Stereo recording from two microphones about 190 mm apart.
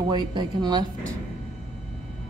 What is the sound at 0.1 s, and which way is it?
Speech, 25° right (ahead or behind).